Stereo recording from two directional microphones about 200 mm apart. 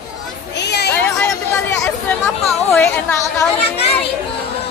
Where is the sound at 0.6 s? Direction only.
55° left (ahead or behind).